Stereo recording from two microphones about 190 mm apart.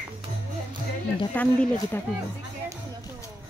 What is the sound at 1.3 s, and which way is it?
Speech, 10° left (ahead or behind).